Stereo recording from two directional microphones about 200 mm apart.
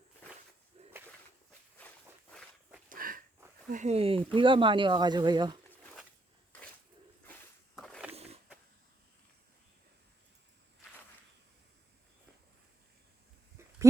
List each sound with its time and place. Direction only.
0.8 s a sound: 30° right (ahead or behind)
2.9 s dog: 45° right (ahead or behind)
3.7 s speech: 35° right (ahead or behind)
7.8 s roaring cats: centre (ahead or behind)
8.1 s wild animals: 30° right (ahead or behind)